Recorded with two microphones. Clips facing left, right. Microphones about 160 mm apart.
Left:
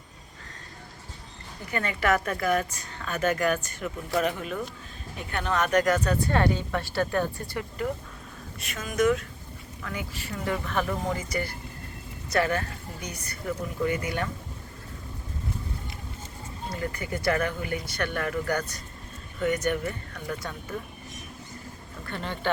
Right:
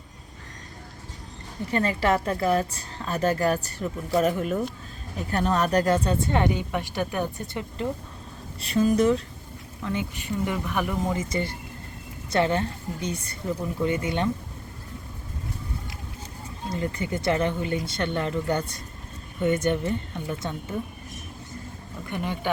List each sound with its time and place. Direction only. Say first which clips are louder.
1.7 s speech: right 2 dB; 30° right (ahead or behind)
8.6 s speech: right 4 dB; 30° right (ahead or behind)
16.7 s speech: right 4 dB; 25° right (ahead or behind)
22.0 s speech: right 1 dB; 15° right (ahead or behind)